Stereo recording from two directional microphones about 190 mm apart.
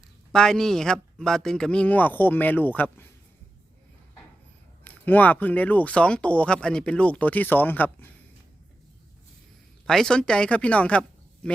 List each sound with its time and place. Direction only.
0.3 s speech: 5° left (ahead or behind)
4.8 s speech: 10° left (ahead or behind)
9.8 s speech: 5° left (ahead or behind)